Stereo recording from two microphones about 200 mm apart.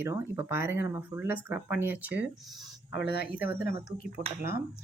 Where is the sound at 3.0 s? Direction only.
55° left (ahead or behind).